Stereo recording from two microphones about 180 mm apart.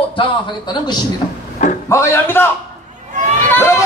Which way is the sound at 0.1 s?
25° left (ahead or behind).